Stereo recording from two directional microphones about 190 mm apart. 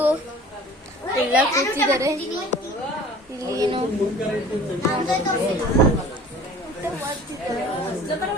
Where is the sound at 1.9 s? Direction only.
15° right (ahead or behind).